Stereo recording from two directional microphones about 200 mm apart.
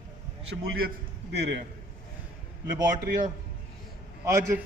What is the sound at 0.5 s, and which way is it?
Speech, 55° right (ahead or behind).